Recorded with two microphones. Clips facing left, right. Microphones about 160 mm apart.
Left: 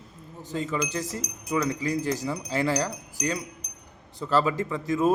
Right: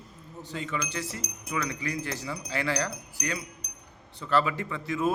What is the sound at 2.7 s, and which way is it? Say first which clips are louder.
Wind chime: left 3 dB; 10° left (ahead or behind).